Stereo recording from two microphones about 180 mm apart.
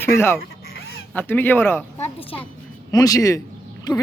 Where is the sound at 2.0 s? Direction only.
30° left (ahead or behind).